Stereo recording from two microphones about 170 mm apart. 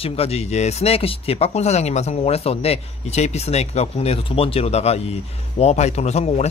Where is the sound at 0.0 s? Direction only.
35° left (ahead or behind).